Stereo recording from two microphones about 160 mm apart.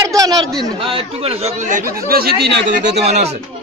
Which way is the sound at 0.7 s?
35° right (ahead or behind).